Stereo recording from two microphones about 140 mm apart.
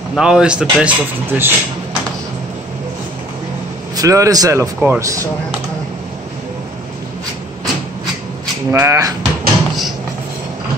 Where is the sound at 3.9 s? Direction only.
25° right (ahead or behind).